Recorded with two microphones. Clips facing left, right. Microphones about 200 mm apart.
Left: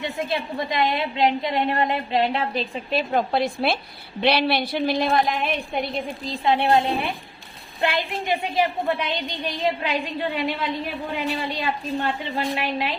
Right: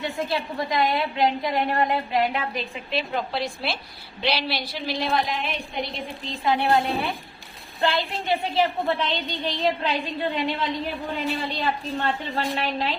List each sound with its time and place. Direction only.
0.0 s a woman's voice: 20° left (ahead or behind)
2.9 s a woman's voice: 50° left (ahead or behind)
6.4 s a woman's voice: 25° left (ahead or behind)